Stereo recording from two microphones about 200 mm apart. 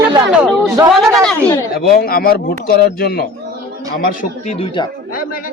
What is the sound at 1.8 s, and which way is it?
Speech, 50° left (ahead or behind).